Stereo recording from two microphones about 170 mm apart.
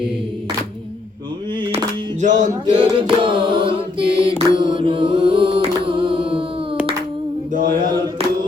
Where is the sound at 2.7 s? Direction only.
30° right (ahead or behind).